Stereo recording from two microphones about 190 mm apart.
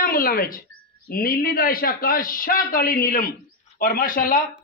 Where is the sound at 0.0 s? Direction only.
50° left (ahead or behind).